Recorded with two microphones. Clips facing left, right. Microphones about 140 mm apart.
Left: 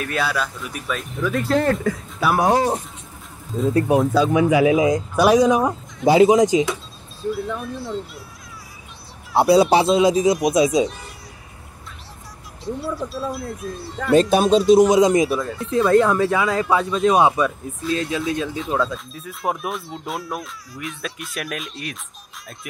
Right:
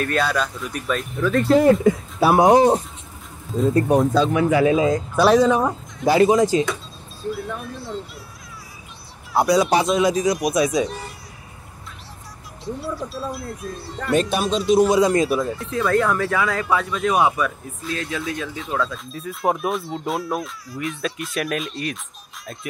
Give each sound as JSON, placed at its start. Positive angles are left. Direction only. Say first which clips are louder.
{"t": 0.0, "sound": "speech", "louder": "right 2 dB", "side_deg": 5}
{"t": 1.6, "sound": "speech", "louder": "right 5 dB", "side_deg": -15}
{"t": 2.1, "sound": "speech", "louder": "right 4 dB", "side_deg": -25}
{"t": 3.5, "sound": "speech", "louder": "even", "side_deg": 0}
{"t": 6.0, "sound": "speech", "louder": "left 2 dB", "side_deg": 20}
{"t": 7.2, "sound": "speech", "louder": "left 3 dB", "side_deg": 0}
{"t": 9.4, "sound": "speech", "louder": "left 3 dB", "side_deg": 30}
{"t": 12.6, "sound": "speech", "louder": "left 2 dB", "side_deg": 0}
{"t": 14.8, "sound": "speech", "louder": "left 2 dB", "side_deg": 20}
{"t": 18.9, "sound": "speech", "louder": "right 1 dB", "side_deg": 0}